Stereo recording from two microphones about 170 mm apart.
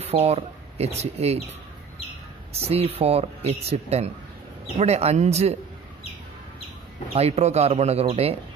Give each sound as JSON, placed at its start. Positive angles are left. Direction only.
{"t": 0.0, "sound": "speech", "side_deg": -35}
{"t": 2.5, "sound": "speech", "side_deg": -35}
{"t": 7.2, "sound": "speech", "side_deg": -40}